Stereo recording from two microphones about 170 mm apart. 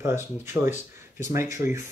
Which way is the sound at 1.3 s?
15° right (ahead or behind).